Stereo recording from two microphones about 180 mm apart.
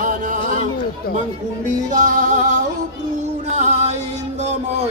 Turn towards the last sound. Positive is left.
turn(degrees=-40)  # may be behind; listen again after turning